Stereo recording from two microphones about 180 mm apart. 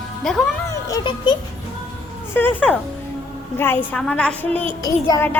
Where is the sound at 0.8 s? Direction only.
20° left (ahead or behind).